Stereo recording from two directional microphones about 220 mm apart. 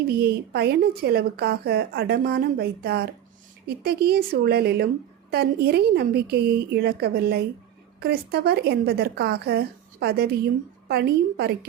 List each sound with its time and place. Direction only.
0.2 s a woman's voice: 45° right (ahead or behind)